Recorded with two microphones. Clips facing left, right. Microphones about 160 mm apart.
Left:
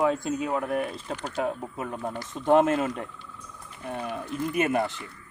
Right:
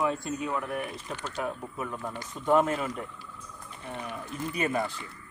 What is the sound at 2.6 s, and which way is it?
Speech, 70° left (ahead or behind).